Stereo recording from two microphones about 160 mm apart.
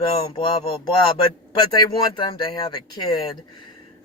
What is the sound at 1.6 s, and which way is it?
Speech, 25° left (ahead or behind).